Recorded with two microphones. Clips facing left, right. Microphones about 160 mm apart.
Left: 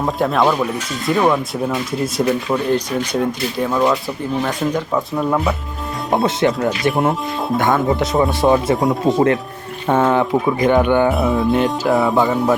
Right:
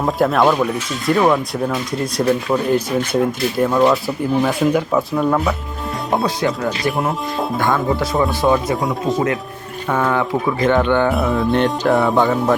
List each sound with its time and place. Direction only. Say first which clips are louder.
0.0 s speech: right 1 dB; centre (ahead or behind)
6.2 s speech: left 3 dB; 30° left (ahead or behind)
11.1 s speech: left 1 dB; centre (ahead or behind)